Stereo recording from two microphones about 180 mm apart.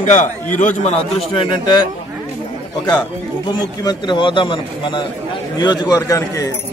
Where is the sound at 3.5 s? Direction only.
25° left (ahead or behind).